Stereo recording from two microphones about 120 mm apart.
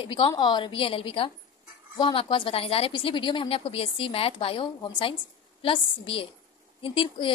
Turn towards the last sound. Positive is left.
turn(degrees=45)  # may be behind; listen again after turning